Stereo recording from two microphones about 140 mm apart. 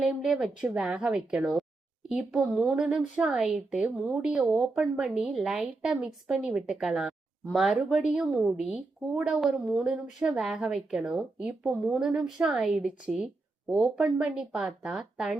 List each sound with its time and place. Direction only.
0.0 s a woman's voice: 5° right (ahead or behind)